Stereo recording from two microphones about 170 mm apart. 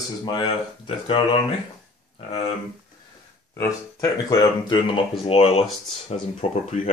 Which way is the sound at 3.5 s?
20° left (ahead or behind).